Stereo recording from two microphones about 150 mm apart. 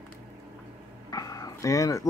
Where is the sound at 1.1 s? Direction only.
25° left (ahead or behind).